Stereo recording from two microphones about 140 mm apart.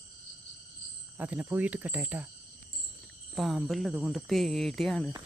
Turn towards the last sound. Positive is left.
turn(degrees=5)  # may be behind; listen again after turning